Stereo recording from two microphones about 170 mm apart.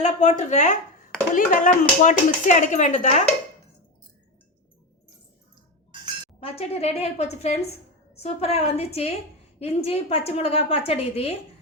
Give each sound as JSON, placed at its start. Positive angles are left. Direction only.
{"t": 0.0, "sound": "speech", "side_deg": 45}
{"t": 6.4, "sound": "a woman's voice", "side_deg": 40}